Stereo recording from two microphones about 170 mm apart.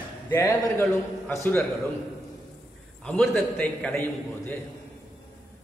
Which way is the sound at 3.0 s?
5° left (ahead or behind).